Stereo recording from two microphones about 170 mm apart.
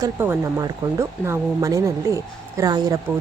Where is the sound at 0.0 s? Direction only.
15° right (ahead or behind).